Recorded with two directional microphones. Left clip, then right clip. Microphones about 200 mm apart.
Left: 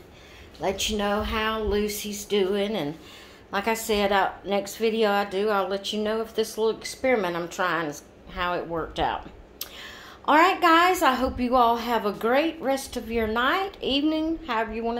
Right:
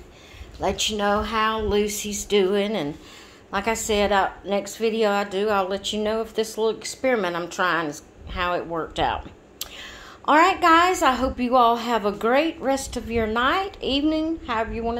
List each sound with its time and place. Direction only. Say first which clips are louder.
0.6 s speech: right 3 dB; 35° right (ahead or behind)
3.5 s a woman's voice: right 2 dB; 10° right (ahead or behind)